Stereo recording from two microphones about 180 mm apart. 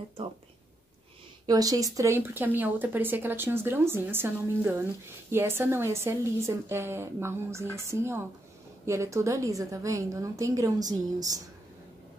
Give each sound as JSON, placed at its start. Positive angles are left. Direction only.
{"t": 1.4, "sound": "speech", "side_deg": -20}